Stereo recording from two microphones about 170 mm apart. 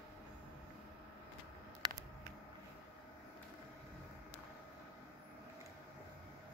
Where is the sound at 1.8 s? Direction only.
25° right (ahead or behind).